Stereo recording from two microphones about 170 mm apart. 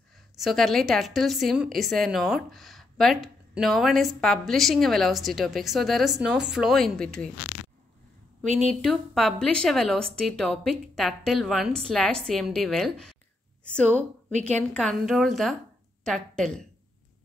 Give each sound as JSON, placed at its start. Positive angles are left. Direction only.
{"t": 0.4, "sound": "a woman's voice", "side_deg": 0}
{"t": 8.5, "sound": "a woman's voice", "side_deg": -45}
{"t": 8.8, "sound": "a woman's voice", "side_deg": 0}
{"t": 14.7, "sound": "a woman's voice", "side_deg": 5}